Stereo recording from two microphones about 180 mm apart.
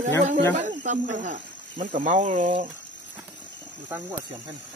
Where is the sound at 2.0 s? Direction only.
45° right (ahead or behind).